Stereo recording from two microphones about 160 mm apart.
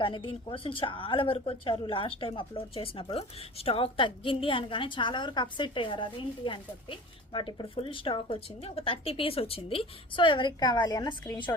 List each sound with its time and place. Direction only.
0.0 s a woman's voice: 30° left (ahead or behind)